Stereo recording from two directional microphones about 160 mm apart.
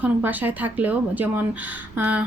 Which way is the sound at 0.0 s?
10° right (ahead or behind).